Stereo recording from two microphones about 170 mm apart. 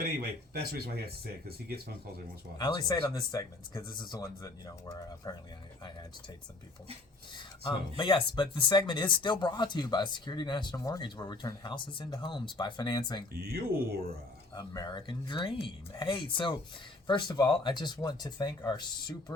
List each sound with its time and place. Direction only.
0.0 s speech: 65° right (ahead or behind)
2.6 s speech: 25° left (ahead or behind)
7.9 s speech: 30° left (ahead or behind)
13.3 s speech: 65° right (ahead or behind)
14.5 s speech: 25° left (ahead or behind)